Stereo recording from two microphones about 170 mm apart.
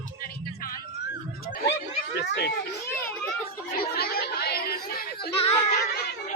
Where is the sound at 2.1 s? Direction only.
85° left.